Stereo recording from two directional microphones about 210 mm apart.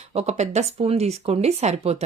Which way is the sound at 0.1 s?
30° right (ahead or behind).